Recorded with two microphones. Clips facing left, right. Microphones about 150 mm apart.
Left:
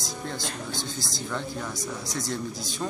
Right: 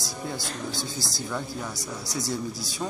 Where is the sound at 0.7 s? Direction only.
20° left (ahead or behind).